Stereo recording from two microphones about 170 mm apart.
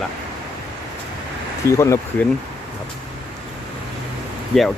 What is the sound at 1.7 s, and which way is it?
Speech, 15° left (ahead or behind).